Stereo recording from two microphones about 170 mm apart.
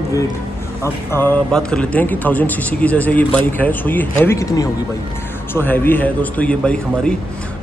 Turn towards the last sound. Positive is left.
turn(degrees=5)  # may be behind; listen again after turning